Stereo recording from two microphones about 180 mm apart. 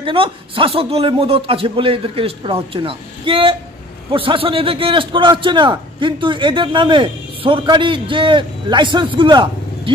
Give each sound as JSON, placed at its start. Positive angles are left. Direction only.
{"t": 0.0, "sound": "a man's voice", "side_deg": -30}